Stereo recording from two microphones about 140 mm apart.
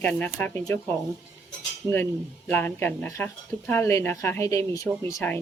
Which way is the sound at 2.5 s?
15° left (ahead or behind).